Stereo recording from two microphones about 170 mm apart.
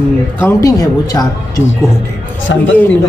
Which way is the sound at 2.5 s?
90° left.